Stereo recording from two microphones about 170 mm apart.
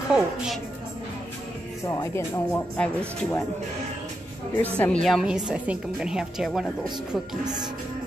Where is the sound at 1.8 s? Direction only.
20° left (ahead or behind).